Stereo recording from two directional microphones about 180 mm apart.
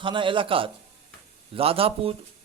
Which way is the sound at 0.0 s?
25° right (ahead or behind).